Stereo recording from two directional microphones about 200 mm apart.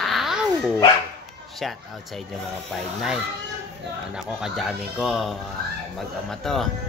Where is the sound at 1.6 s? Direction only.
Centre (ahead or behind).